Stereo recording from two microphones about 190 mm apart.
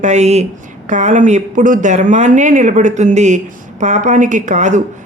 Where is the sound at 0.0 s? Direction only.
35° right (ahead or behind).